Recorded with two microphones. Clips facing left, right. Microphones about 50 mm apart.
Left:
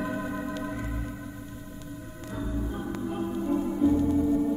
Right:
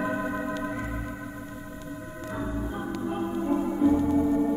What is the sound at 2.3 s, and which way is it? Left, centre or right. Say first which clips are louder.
Music: right 1 dB; right.